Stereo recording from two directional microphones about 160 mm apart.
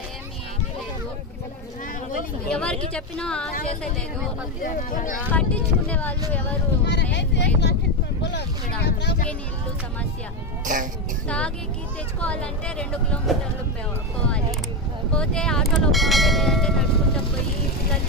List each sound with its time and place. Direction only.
2.5 s speech: 5° left (ahead or behind)
4.6 s speech: 55° left (ahead or behind)
5.3 s speech: 10° left (ahead or behind)
6.9 s speech: 90° left
8.2 s vehicle: 90° left
10.6 s speech: 55° right (ahead or behind)
11.2 s speech: 5° left (ahead or behind)
15.1 s speech: 5° left (ahead or behind)